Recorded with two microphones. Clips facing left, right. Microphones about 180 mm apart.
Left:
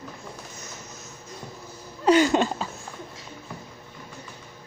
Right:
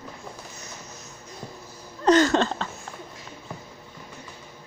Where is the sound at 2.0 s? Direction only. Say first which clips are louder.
Even; 10° left (ahead or behind).